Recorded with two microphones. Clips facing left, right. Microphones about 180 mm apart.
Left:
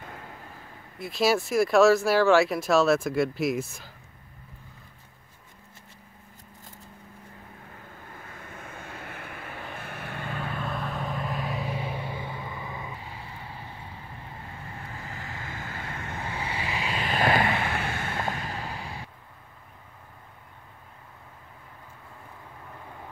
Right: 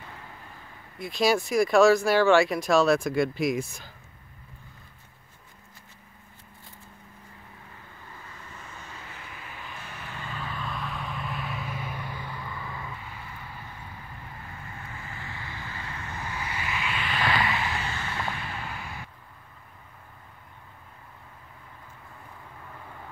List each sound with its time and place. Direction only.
0.9 s speech: 5° left (ahead or behind)
8.0 s vehicle: 50° left (ahead or behind); by 13.0 s 20° left (ahead or behind)
13.0 s vehicle: 30° left (ahead or behind); by 16.2 s 50° left (ahead or behind)
16.2 s vehicle: 30° left (ahead or behind)